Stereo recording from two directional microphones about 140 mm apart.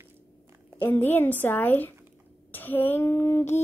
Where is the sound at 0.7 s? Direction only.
15° left (ahead or behind).